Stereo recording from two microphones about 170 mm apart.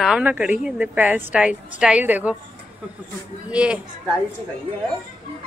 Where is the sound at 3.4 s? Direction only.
5° right (ahead or behind).